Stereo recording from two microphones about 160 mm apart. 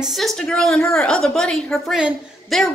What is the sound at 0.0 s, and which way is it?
A woman's voice, centre (ahead or behind).